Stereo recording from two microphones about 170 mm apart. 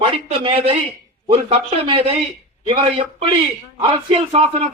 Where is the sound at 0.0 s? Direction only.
35° right (ahead or behind).